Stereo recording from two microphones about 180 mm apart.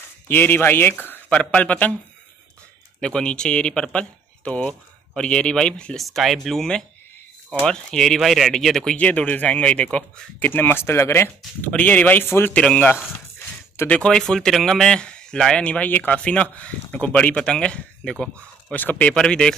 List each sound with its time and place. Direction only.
0.3 s speech: 10° left (ahead or behind)
3.0 s speech: 5° left (ahead or behind)